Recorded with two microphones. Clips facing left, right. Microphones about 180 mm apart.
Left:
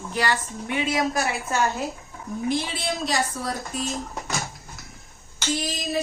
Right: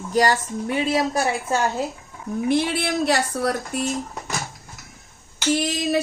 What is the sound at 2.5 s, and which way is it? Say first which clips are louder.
Speech: right 8 dB; 60° right (ahead or behind).